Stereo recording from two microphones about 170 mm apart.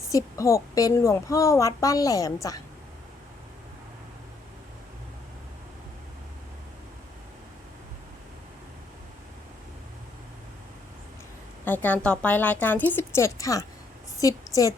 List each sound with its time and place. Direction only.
0.1 s a woman's voice: 20° left (ahead or behind)
11.6 s a woman's voice: 10° left (ahead or behind)